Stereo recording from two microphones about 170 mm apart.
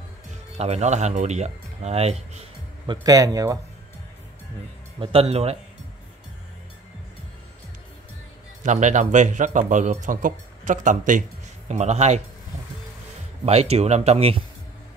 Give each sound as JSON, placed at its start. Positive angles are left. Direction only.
{"t": 0.3, "sound": "speech", "side_deg": -40}
{"t": 2.9, "sound": "a man's voice", "side_deg": -20}
{"t": 5.0, "sound": "speech", "side_deg": -35}
{"t": 8.6, "sound": "speech", "side_deg": -45}
{"t": 13.5, "sound": "speech", "side_deg": -35}